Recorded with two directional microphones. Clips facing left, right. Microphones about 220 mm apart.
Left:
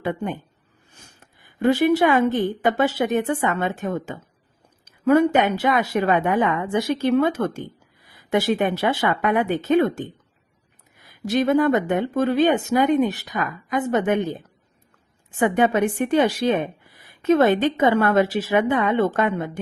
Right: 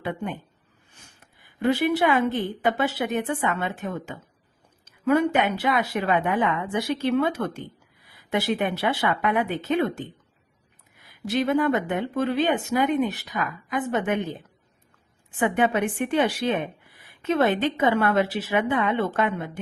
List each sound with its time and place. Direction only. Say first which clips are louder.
1.5 s speech: left 4 dB; 45° left (ahead or behind)
11.3 s speech: left 4 dB; 45° left (ahead or behind)
15.4 s speech: left 4 dB; 40° left (ahead or behind)